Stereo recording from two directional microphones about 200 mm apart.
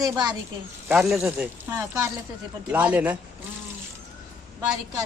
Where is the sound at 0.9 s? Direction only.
Centre (ahead or behind).